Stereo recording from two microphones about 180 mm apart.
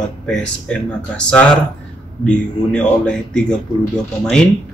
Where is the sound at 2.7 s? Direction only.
5° left (ahead or behind).